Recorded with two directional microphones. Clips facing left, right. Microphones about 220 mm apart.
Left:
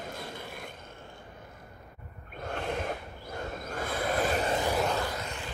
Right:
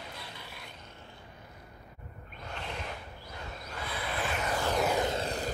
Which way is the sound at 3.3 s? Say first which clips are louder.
Left 7 dB; 45° left (ahead or behind).